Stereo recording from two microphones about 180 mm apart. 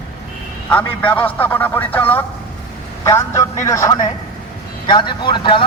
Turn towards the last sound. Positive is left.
turn(degrees=25)  # may be behind; listen again after turning